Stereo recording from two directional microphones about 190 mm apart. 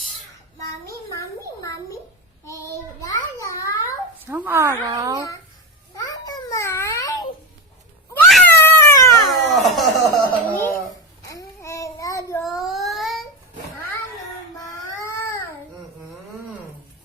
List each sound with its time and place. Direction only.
0.6 s a sound: 15° left (ahead or behind)
2.5 s child singing: 15° left (ahead or behind)
3.4 s a sound: 15° left (ahead or behind)
4.3 s a woman's voice: 10° right (ahead or behind)
6.0 s babbling: 20° left (ahead or behind)
8.1 s cat: 5° left (ahead or behind)
9.3 s music: centre (ahead or behind)
11.3 s child singing: 15° left (ahead or behind)
12.4 s child singing: centre (ahead or behind)
15.0 s baby cry: 15° left (ahead or behind)